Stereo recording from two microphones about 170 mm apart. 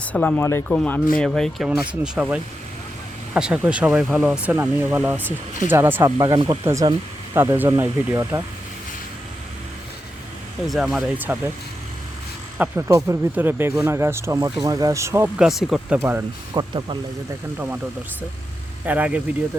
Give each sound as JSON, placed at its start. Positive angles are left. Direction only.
{"t": 0.0, "sound": "speech", "side_deg": 10}
{"t": 7.3, "sound": "speech", "side_deg": -10}
{"t": 10.7, "sound": "speech", "side_deg": 0}
{"t": 12.5, "sound": "speech", "side_deg": -10}
{"t": 15.4, "sound": "speech", "side_deg": 0}
{"t": 16.0, "sound": "speech", "side_deg": -15}
{"t": 18.9, "sound": "speech", "side_deg": -10}